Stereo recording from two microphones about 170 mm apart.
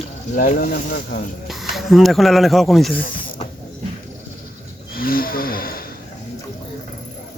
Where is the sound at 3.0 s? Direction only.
55° left (ahead or behind).